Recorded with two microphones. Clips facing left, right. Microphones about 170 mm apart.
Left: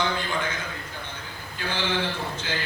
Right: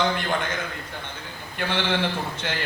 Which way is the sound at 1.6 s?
65° right (ahead or behind).